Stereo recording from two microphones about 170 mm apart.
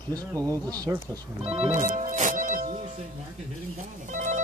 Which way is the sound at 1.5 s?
45° right (ahead or behind).